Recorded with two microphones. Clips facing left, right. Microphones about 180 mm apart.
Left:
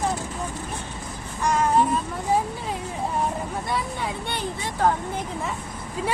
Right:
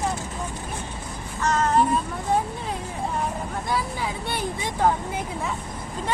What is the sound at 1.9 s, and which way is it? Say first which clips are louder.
Speech: even; centre (ahead or behind).